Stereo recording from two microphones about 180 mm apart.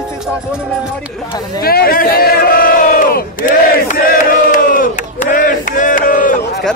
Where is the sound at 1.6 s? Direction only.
55° left (ahead or behind).